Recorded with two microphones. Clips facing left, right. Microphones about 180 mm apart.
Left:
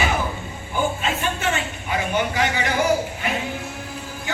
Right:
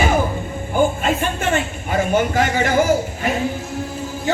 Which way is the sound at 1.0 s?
50° right (ahead or behind).